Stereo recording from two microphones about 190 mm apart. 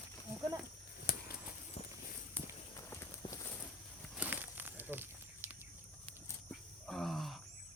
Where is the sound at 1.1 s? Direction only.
50° left (ahead or behind).